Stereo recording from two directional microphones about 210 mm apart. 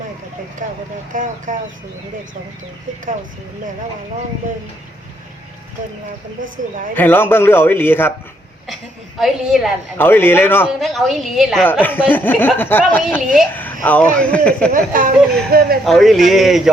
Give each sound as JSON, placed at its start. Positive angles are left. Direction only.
{"t": 0.6, "sound": "speech", "side_deg": -40}
{"t": 6.9, "sound": "speech", "side_deg": 10}
{"t": 8.6, "sound": "a woman's voice", "side_deg": 0}
{"t": 10.0, "sound": "speech", "side_deg": 10}
{"t": 10.8, "sound": "a woman's voice", "side_deg": 0}
{"t": 14.7, "sound": "speech", "side_deg": -40}
{"t": 15.8, "sound": "a woman's voice", "side_deg": 0}